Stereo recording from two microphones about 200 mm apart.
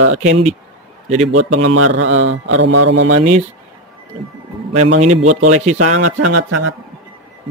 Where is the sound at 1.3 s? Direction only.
80° right.